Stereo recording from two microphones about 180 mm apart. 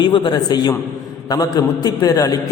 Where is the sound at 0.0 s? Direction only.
25° left (ahead or behind).